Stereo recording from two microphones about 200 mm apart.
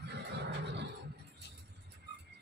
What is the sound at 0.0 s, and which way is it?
Neigh, 60° right (ahead or behind).